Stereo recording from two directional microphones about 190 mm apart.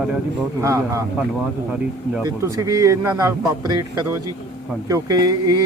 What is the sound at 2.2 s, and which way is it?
A man's voice, 20° right (ahead or behind).